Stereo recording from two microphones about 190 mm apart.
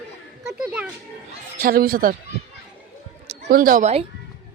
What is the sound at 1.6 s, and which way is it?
Speech, 50° right (ahead or behind).